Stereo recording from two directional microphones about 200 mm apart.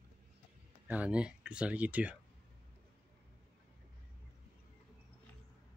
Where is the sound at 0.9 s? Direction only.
5° right (ahead or behind).